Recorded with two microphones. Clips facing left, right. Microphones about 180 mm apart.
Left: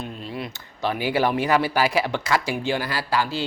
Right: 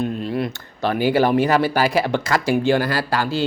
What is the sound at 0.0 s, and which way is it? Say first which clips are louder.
Speech: right 9 dB; 55° right (ahead or behind).